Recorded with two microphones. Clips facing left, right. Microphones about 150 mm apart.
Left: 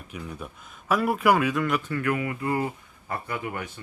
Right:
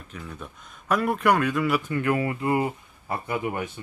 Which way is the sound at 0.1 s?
10° left (ahead or behind).